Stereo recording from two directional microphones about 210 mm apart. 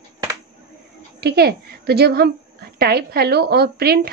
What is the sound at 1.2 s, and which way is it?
A woman's voice, 50° right (ahead or behind).